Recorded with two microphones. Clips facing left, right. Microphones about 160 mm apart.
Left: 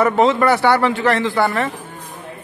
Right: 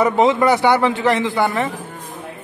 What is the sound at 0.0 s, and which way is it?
A man's voice, 15° right (ahead or behind).